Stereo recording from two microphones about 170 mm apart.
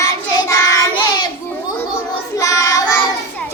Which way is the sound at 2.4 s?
20° left (ahead or behind).